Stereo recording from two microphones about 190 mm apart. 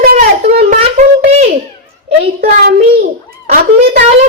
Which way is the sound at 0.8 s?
35° right (ahead or behind).